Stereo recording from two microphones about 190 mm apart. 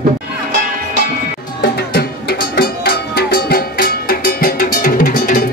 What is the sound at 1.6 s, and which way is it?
Music, 55° left (ahead or behind).